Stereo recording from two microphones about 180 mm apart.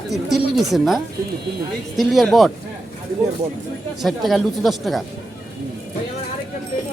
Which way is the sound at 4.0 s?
Centre (ahead or behind).